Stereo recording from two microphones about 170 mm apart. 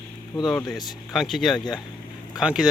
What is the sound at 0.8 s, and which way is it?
Speech, centre (ahead or behind).